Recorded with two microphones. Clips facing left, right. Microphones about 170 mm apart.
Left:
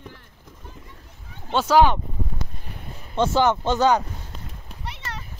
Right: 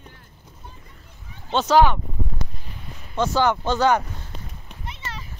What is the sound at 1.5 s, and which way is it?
Speech, 10° left (ahead or behind).